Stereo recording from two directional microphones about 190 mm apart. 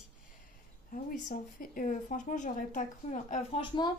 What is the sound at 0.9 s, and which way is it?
Speech, 40° left (ahead or behind).